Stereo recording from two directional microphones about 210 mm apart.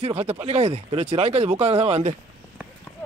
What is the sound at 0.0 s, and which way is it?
Speech, 30° right (ahead or behind).